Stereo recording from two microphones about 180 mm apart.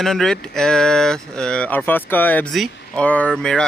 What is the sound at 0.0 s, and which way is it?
Speech, centre (ahead or behind).